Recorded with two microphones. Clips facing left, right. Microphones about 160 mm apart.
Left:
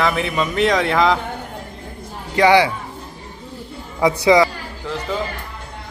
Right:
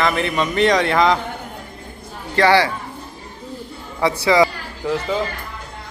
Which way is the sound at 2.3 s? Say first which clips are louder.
Left 2 dB; 15° left (ahead or behind).